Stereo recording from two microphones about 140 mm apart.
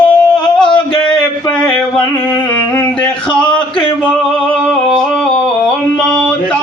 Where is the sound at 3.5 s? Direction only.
35° left (ahead or behind).